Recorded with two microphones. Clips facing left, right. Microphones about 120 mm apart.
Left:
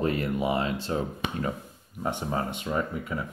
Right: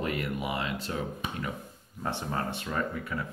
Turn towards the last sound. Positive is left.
turn(degrees=15)  # may be behind; listen again after turning